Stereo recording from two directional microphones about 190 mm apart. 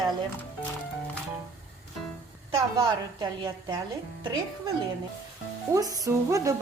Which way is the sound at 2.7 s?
20° right (ahead or behind).